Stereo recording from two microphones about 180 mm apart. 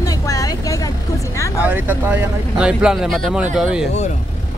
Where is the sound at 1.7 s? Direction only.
10° right (ahead or behind).